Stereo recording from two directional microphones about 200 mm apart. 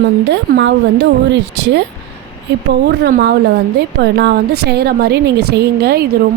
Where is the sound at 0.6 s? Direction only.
60° right (ahead or behind).